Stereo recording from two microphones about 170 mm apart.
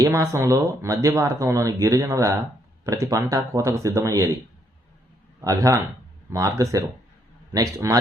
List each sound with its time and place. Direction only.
0.0 s speech: 15° right (ahead or behind)
5.4 s a man's voice: 20° right (ahead or behind)